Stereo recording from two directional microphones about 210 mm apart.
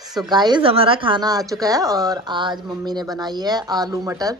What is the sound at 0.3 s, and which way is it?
A woman's voice, 20° right (ahead or behind).